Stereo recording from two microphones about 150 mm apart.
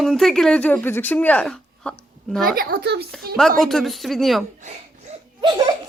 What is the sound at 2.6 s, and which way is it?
Speech, 90° right.